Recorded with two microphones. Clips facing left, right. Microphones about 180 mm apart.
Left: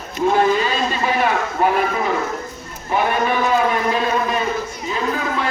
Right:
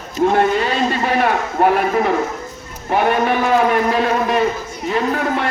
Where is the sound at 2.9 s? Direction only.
60° right (ahead or behind).